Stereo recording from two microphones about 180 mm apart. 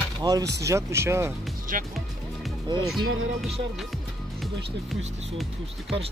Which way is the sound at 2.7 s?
25° right (ahead or behind).